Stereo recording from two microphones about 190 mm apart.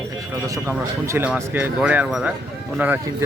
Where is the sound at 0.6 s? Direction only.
10° right (ahead or behind).